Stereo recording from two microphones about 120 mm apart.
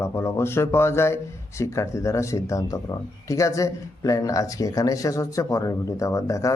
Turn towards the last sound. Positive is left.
turn(degrees=25)  # may be behind; listen again after turning